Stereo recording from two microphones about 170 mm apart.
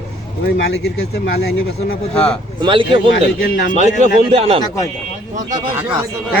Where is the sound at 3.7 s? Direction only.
40° right (ahead or behind).